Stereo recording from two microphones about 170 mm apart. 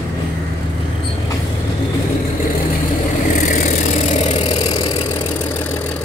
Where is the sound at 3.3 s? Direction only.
45° left (ahead or behind).